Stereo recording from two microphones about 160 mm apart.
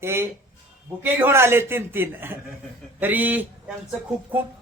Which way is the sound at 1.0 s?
15° right (ahead or behind).